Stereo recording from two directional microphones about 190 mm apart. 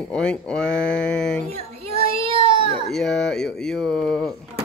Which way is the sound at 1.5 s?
35° right (ahead or behind).